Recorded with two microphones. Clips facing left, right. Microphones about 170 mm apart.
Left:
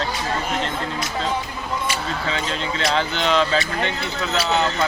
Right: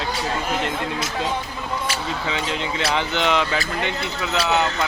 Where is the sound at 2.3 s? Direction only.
15° right (ahead or behind).